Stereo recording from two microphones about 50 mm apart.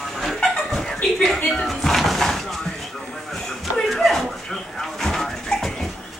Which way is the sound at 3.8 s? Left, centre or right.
Centre.